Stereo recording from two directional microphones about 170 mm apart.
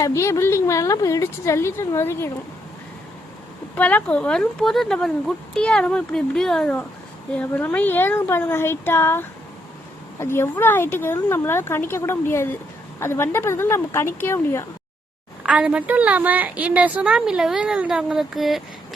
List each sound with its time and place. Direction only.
0.0 s speech: 15° left (ahead or behind)
3.8 s speech: 10° left (ahead or behind)
15.4 s a woman's voice: 5° right (ahead or behind)